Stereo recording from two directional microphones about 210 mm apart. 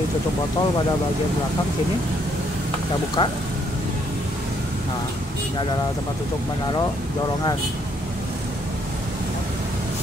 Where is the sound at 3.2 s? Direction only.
25° left (ahead or behind).